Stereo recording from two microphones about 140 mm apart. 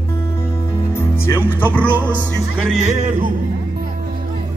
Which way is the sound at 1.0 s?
15° left (ahead or behind).